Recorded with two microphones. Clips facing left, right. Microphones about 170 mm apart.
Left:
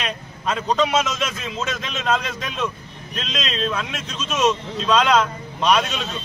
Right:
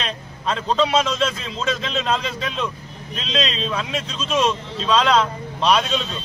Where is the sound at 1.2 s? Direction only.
5° left (ahead or behind).